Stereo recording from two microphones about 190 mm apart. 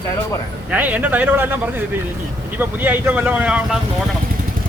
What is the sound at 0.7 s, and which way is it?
Speech, 10° right (ahead or behind).